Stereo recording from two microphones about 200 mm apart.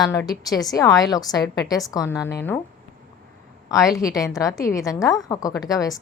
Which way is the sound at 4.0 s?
15° left (ahead or behind).